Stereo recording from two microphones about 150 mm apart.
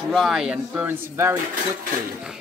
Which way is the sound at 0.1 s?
Centre (ahead or behind).